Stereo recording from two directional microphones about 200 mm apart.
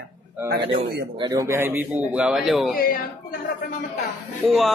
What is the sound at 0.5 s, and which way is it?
Speech, 60° right (ahead or behind).